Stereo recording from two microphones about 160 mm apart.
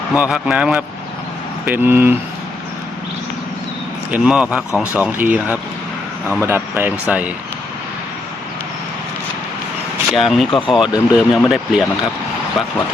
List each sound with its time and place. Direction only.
0.1 s a man's voice: 5° right (ahead or behind)
4.1 s a man's voice: 5° right (ahead or behind)
4.7 s speech: 20° left (ahead or behind)
4.9 s a man's voice: 10° right (ahead or behind)
10.1 s speech: centre (ahead or behind)
10.8 s speech: 25° left (ahead or behind)
11.3 s speech: 5° right (ahead or behind)